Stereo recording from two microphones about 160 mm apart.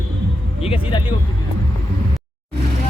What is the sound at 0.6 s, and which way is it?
Speech, 35° left (ahead or behind).